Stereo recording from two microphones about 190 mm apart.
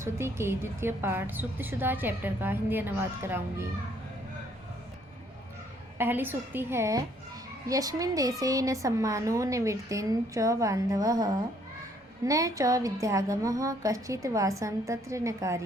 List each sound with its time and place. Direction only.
0.0 s a woman's voice: 15° right (ahead or behind)
6.0 s a woman's voice: 10° right (ahead or behind)